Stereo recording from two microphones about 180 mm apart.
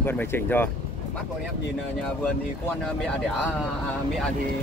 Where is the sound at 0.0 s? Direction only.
10° left (ahead or behind).